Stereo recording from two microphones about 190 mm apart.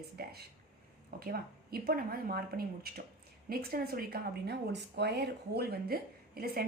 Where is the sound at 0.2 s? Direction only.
55° right (ahead or behind).